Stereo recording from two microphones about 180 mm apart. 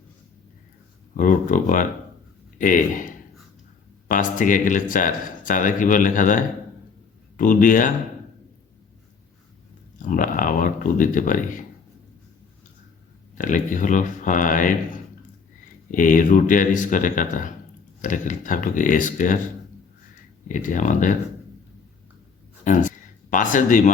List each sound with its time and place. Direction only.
1.1 s speech: 50° left (ahead or behind)
4.1 s speech: 45° left (ahead or behind)
10.0 s speech: 50° left (ahead or behind)
13.3 s speech: 45° left (ahead or behind)
15.9 s speech: 45° left (ahead or behind)
20.5 s speech: 45° left (ahead or behind)
22.6 s speech: 45° left (ahead or behind)